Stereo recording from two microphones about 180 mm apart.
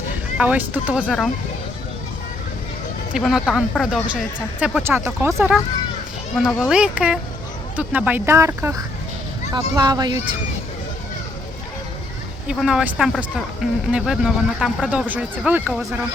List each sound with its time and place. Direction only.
0.3 s speech: 10° right (ahead or behind)
1.0 s speech: 5° left (ahead or behind)
3.1 s speech: centre (ahead or behind)
6.3 s a child's voice: centre (ahead or behind); by 10.2 s 20° right (ahead or behind)
12.5 s speech: 5° right (ahead or behind)